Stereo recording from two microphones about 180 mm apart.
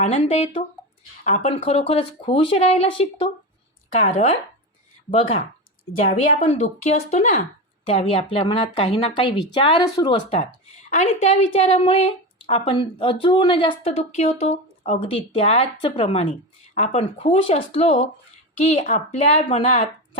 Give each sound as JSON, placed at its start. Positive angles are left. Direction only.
{"t": 0.0, "sound": "a woman's voice", "side_deg": 35}